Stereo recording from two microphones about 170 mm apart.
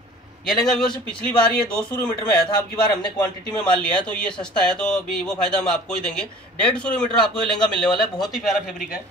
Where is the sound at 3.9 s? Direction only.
5° left (ahead or behind).